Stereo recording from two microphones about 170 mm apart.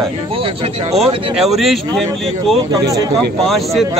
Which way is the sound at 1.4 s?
Centre (ahead or behind).